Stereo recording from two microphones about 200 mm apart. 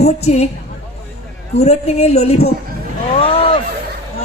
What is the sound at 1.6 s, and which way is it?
Speech, 35° left (ahead or behind).